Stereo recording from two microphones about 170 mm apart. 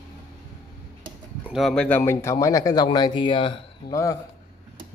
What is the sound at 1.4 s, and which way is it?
Speech, centre (ahead or behind).